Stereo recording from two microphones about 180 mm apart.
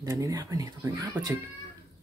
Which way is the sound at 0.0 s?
20° right (ahead or behind).